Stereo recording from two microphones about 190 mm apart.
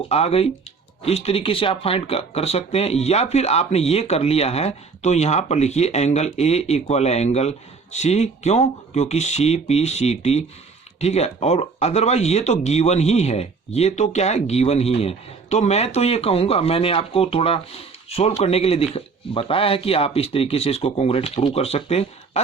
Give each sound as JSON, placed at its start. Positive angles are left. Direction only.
{"t": 0.1, "sound": "speech", "side_deg": 30}